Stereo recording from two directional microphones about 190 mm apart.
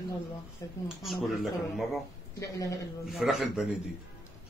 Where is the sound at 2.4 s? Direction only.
15° left (ahead or behind).